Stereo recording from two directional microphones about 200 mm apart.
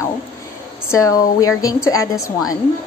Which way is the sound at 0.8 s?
15° left (ahead or behind).